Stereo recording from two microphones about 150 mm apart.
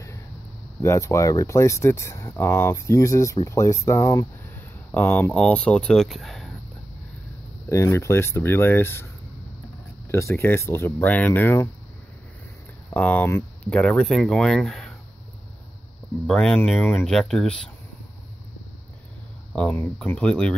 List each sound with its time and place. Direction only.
0.8 s speech: 20° left (ahead or behind)
4.6 s speech: 15° left (ahead or behind)
7.7 s speech: 20° left (ahead or behind)
10.0 s speech: 20° left (ahead or behind)
12.9 s speech: 10° left (ahead or behind)
16.3 s speech: 5° left (ahead or behind)
19.5 s speech: 10° left (ahead or behind)